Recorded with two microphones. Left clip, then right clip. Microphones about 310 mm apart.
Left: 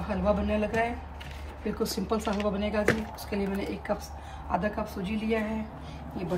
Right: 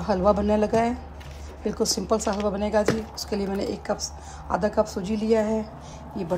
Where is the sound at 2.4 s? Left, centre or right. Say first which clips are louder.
Right 3 dB; centre.